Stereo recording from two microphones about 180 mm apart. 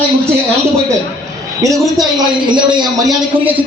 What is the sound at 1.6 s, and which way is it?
A man's voice, 20° right (ahead or behind).